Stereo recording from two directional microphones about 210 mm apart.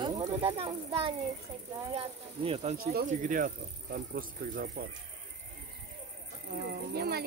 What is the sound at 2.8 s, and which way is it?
A child's voice, 45° right (ahead or behind).